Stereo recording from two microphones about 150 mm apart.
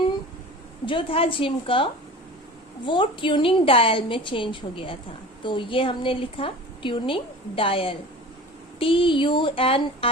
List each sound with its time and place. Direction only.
0.9 s a woman's voice: 35° left (ahead or behind)